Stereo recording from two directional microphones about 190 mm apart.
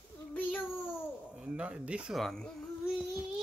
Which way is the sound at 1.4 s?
5° right (ahead or behind).